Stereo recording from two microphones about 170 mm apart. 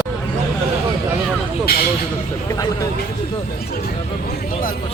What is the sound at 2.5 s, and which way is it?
Speech, 20° left (ahead or behind).